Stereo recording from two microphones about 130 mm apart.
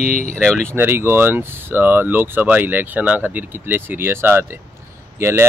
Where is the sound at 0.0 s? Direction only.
70° left (ahead or behind).